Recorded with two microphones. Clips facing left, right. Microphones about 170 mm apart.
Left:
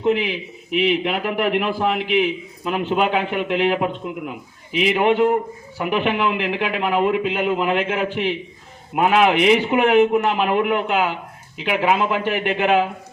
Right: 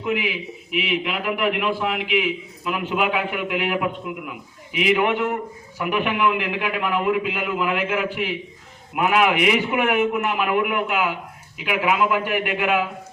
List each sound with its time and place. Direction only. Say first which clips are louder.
0.0 s a man's voice: left 5 dB; 35° left (ahead or behind)
4.7 s a man's voice: left 2 dB; 25° left (ahead or behind)